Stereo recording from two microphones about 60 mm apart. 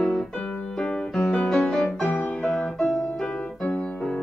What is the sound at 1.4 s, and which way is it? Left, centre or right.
Music, centre.